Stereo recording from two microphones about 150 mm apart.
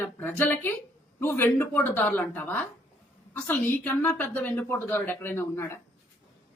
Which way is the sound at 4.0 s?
10° left (ahead or behind).